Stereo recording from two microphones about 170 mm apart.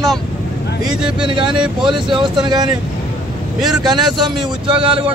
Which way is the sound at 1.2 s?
30° right (ahead or behind).